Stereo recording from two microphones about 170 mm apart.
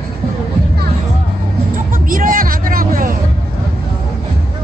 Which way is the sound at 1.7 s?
55° right (ahead or behind).